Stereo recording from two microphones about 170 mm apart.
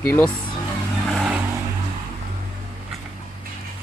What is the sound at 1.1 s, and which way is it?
Vehicle, centre (ahead or behind).